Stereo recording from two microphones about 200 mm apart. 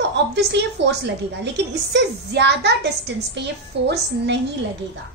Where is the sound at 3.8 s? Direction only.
60° right (ahead or behind).